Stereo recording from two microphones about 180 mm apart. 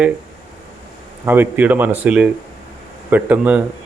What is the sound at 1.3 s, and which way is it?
A man's voice, 10° right (ahead or behind).